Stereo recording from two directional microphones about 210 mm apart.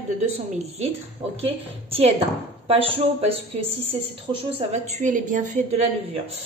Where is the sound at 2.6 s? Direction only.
25° right (ahead or behind).